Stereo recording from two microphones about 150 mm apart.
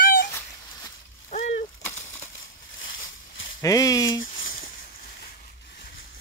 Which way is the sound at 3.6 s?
25° left (ahead or behind).